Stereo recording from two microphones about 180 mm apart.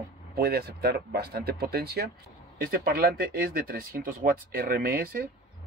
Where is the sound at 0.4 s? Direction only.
60° right (ahead or behind).